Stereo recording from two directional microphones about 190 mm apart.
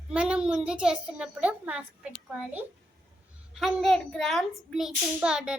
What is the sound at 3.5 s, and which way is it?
A child's voice, centre (ahead or behind).